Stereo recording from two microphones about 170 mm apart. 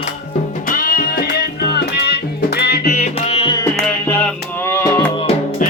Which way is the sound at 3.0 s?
35° left (ahead or behind).